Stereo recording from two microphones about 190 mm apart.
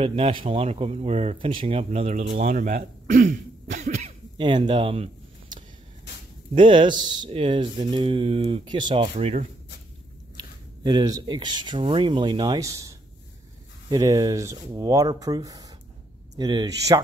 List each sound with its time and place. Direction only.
0.0 s speech: 30° right (ahead or behind)
4.4 s speech: 25° right (ahead or behind)
6.5 s speech: 25° right (ahead or behind)
10.3 s speech: 25° right (ahead or behind)